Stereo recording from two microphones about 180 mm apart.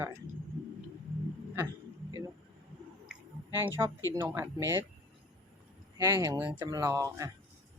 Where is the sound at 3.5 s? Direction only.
10° right (ahead or behind).